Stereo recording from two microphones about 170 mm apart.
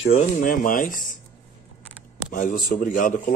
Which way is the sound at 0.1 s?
50° left (ahead or behind).